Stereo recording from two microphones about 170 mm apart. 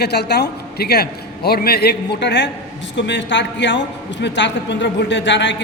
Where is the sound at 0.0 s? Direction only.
75° left (ahead or behind).